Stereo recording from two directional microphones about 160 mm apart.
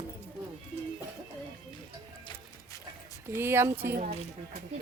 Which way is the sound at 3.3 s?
15° right (ahead or behind).